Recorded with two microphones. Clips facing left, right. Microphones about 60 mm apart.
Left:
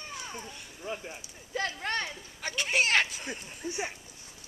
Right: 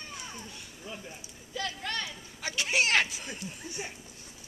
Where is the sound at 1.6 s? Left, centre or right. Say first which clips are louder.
Left 3 dB; left.